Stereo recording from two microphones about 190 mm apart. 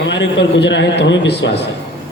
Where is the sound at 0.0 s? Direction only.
70° left (ahead or behind).